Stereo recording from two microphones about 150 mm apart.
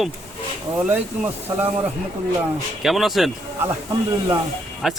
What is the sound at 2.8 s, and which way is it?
Speech, centre (ahead or behind).